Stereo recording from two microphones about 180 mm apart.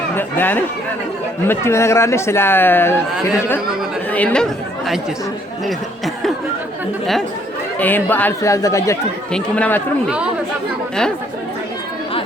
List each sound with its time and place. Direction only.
0.2 s speech: 10° left (ahead or behind)
7.8 s speech: 10° left (ahead or behind)